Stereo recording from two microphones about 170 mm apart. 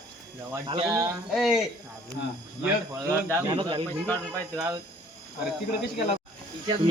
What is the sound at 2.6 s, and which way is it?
A man's voice, 15° right (ahead or behind).